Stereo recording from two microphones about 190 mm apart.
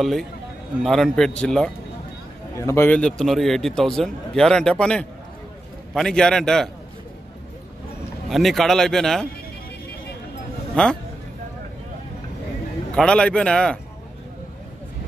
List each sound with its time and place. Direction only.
0.0 s a man's voice: centre (ahead or behind)
8.3 s a man's voice: centre (ahead or behind)
10.8 s a man's voice: 5° left (ahead or behind)
12.9 s a man's voice: 5° left (ahead or behind)